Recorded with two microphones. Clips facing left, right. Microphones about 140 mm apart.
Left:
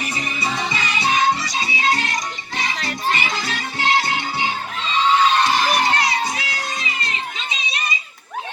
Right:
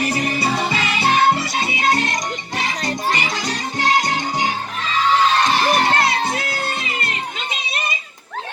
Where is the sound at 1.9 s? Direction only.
20° right (ahead or behind).